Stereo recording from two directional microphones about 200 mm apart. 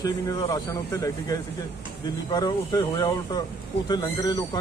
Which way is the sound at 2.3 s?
20° left (ahead or behind).